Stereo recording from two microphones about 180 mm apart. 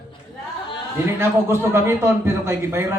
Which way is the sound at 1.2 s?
15° right (ahead or behind).